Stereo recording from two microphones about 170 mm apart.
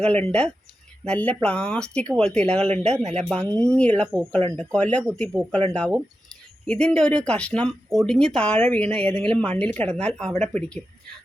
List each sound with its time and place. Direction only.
0.1 s speech: 10° left (ahead or behind)
2.9 s speech: 40° right (ahead or behind)
3.2 s speech: 5° left (ahead or behind)